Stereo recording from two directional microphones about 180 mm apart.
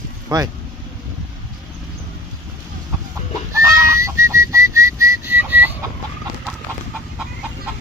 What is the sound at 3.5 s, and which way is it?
Whistling, 15° right (ahead or behind).